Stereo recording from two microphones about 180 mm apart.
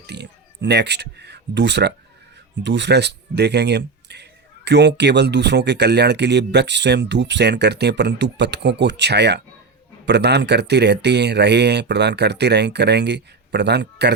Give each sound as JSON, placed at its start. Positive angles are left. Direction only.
{"t": 0.1, "sound": "a man's voice", "side_deg": -70}